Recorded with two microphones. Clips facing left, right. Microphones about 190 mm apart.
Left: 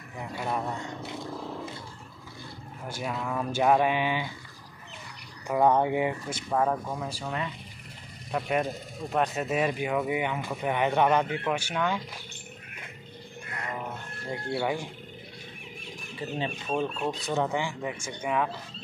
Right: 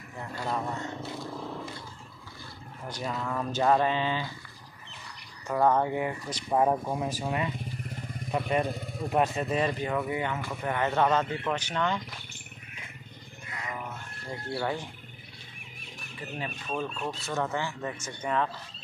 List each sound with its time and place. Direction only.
0.2 s speech: 15° left (ahead or behind)
3.0 s speech: 5° left (ahead or behind)
5.5 s speech: 15° left (ahead or behind)
6.5 s speech: 20° right (ahead or behind)
8.3 s speech: centre (ahead or behind)
14.6 s speech: 10° left (ahead or behind)
16.2 s speech: 25° left (ahead or behind); by 18.5 s 10° left (ahead or behind)